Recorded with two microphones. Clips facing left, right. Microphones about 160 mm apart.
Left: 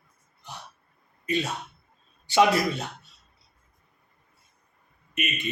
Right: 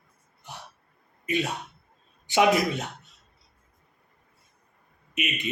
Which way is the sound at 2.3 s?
15° right (ahead or behind).